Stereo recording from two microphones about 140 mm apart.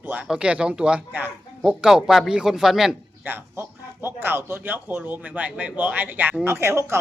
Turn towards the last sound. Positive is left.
turn(degrees=-20)  # may be behind; listen again after turning